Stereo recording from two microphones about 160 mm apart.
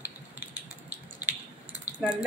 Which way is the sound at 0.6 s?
10° right (ahead or behind).